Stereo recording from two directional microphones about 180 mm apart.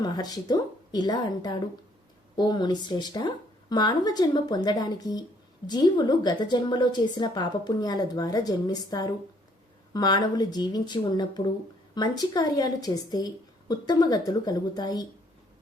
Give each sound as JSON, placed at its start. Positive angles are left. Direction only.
{"t": 0.0, "sound": "a woman's voice", "side_deg": 20}